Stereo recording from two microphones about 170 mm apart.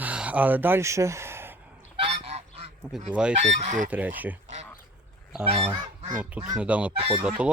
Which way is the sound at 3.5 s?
45° right (ahead or behind).